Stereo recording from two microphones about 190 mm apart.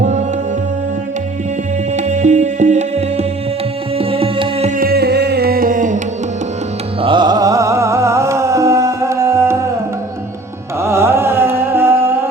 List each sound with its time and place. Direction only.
0.0 s music: 40° right (ahead or behind)
2.0 s music: 40° right (ahead or behind)
4.8 s music: 55° right (ahead or behind)
7.0 s music: 25° right (ahead or behind)
10.8 s carnatic music: 15° right (ahead or behind)